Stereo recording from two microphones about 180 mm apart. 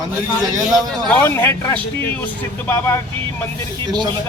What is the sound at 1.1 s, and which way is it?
Speech, 10° left (ahead or behind).